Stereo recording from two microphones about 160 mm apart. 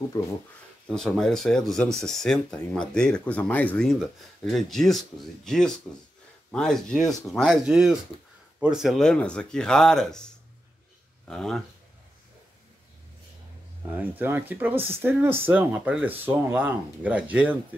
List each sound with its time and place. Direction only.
0.2 s speech: 25° left (ahead or behind)
0.8 s speech: 5° left (ahead or behind)
11.2 s speech: 5° left (ahead or behind)
13.9 s speech: 10° right (ahead or behind)